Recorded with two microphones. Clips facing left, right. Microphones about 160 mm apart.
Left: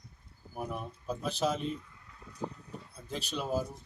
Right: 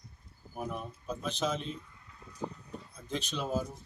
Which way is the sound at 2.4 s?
5° left (ahead or behind).